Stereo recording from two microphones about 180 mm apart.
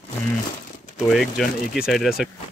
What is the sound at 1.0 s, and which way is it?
A man's voice, centre (ahead or behind).